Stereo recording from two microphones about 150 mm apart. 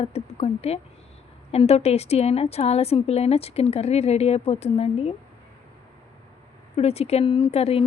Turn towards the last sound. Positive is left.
turn(degrees=40)  # may be behind; listen again after turning